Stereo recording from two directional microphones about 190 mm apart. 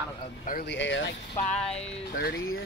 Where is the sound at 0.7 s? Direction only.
75° left (ahead or behind).